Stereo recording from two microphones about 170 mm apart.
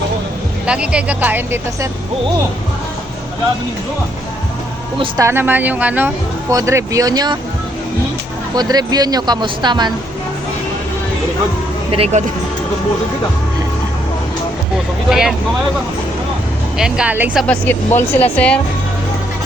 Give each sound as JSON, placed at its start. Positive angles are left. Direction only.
{"t": 0.6, "sound": "speech", "side_deg": -5}
{"t": 5.1, "sound": "speech", "side_deg": -15}
{"t": 8.5, "sound": "speech", "side_deg": -25}
{"t": 11.9, "sound": "speech", "side_deg": -35}
{"t": 15.1, "sound": "speech", "side_deg": 0}
{"t": 16.7, "sound": "speech", "side_deg": -5}
{"t": 17.4, "sound": "speech", "side_deg": 10}